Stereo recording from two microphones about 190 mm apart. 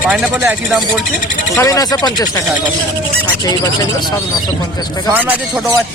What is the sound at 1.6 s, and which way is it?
Speech, 20° left (ahead or behind).